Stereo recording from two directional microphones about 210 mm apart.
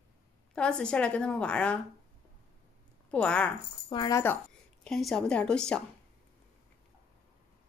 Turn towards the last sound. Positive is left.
turn(degrees=5)  # may be behind; listen again after turning